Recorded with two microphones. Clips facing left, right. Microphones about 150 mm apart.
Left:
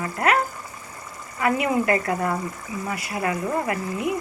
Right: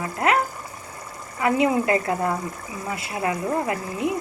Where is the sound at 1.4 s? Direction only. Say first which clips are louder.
Right 2 dB; 20° right (ahead or behind).